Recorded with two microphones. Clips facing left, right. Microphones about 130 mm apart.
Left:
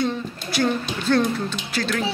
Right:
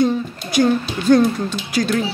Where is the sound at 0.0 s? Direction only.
15° right (ahead or behind).